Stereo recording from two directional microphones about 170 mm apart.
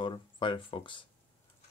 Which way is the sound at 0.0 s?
30° left (ahead or behind).